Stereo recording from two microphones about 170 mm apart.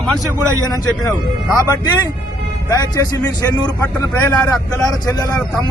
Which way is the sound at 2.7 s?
20° left (ahead or behind).